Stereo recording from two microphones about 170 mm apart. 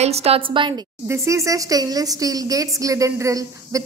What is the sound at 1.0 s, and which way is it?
Speech, 15° right (ahead or behind).